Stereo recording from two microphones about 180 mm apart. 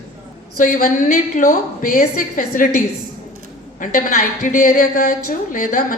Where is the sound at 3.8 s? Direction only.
50° left (ahead or behind).